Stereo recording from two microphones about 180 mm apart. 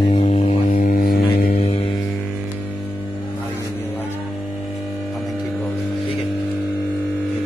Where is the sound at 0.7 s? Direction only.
50° left (ahead or behind).